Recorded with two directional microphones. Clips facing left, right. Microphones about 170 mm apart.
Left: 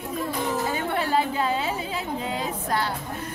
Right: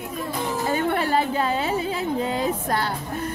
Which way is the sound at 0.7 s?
55° right (ahead or behind).